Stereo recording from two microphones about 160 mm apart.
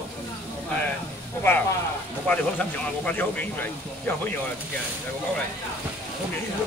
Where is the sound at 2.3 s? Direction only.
10° left (ahead or behind).